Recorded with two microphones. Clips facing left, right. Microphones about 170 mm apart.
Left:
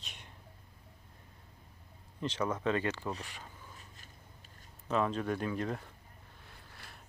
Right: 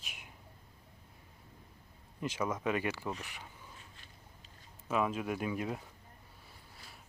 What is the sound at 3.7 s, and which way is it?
Walk, 40° left (ahead or behind).